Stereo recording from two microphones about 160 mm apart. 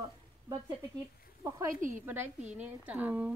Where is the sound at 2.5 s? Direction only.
10° right (ahead or behind).